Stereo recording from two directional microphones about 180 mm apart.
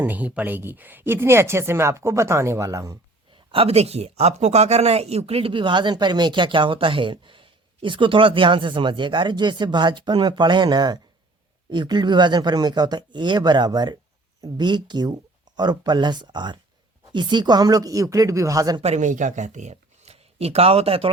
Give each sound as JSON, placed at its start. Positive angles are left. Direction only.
{"t": 0.0, "sound": "speech", "side_deg": -10}
{"t": 3.5, "sound": "speech", "side_deg": -35}
{"t": 18.8, "sound": "speech", "side_deg": -40}